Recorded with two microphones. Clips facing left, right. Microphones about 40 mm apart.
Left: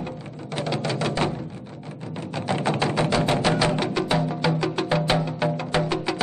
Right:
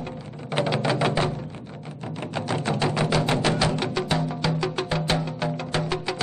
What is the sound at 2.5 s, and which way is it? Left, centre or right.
Music, left.